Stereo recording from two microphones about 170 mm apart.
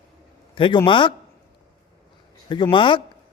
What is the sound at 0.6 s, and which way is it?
Speech, 30° left (ahead or behind).